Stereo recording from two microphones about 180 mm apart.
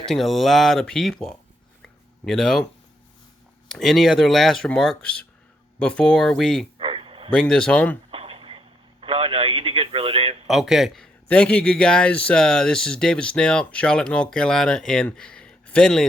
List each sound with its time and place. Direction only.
0.0 s a man's voice: centre (ahead or behind)
1.8 s a sound: centre (ahead or behind)
3.7 s a man's voice: centre (ahead or behind)
6.7 s a sound: 30° right (ahead or behind)
7.3 s a man's voice: 5° left (ahead or behind)
8.1 s radio: 30° right (ahead or behind)
10.4 s a man's voice: centre (ahead or behind)